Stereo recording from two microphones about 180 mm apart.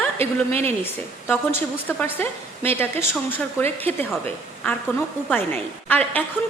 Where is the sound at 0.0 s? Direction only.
10° left (ahead or behind).